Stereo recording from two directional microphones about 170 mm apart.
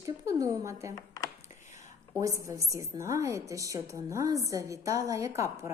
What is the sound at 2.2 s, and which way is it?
A woman's voice, 20° right (ahead or behind).